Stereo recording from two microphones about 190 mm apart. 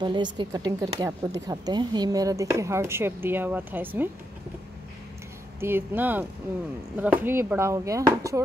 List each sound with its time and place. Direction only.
0.0 s a woman's voice: 25° right (ahead or behind)
5.6 s a woman's voice: 10° right (ahead or behind)